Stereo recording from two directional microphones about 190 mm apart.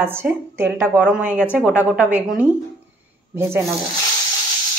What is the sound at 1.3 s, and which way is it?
Speech, 10° left (ahead or behind).